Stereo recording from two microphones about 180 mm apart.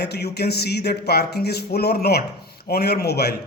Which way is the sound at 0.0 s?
65° left (ahead or behind).